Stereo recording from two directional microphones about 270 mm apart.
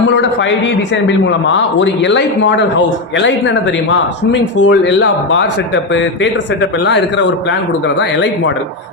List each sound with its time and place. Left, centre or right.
0.1 s a man's voice: left